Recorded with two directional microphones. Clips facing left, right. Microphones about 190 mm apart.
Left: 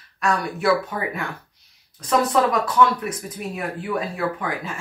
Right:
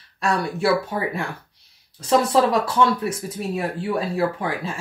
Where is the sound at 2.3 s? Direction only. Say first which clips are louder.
Right 2 dB; 30° right (ahead or behind).